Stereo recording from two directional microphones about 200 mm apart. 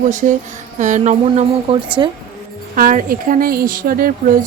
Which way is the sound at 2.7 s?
40° right (ahead or behind).